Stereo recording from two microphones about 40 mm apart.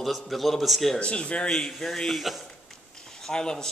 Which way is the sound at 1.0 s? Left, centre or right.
Left.